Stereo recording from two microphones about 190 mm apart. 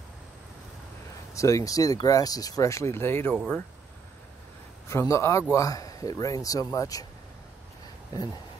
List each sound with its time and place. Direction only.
1.3 s speech: 15° left (ahead or behind)
4.8 s a man's voice: 15° left (ahead or behind)